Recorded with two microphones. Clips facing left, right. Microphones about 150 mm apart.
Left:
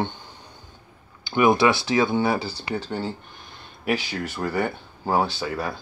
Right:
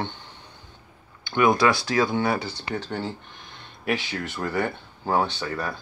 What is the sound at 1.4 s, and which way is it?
Speech, 25° left (ahead or behind).